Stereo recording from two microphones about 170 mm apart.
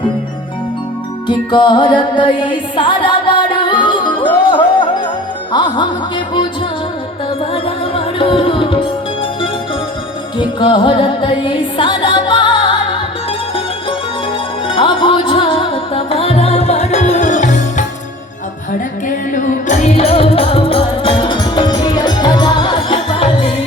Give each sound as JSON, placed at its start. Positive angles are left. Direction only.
{"t": 1.3, "sound": "music", "side_deg": 25}
{"t": 7.5, "sound": "music", "side_deg": 35}
{"t": 10.3, "sound": "music", "side_deg": 30}
{"t": 14.7, "sound": "music", "side_deg": 30}
{"t": 19.0, "sound": "music", "side_deg": 50}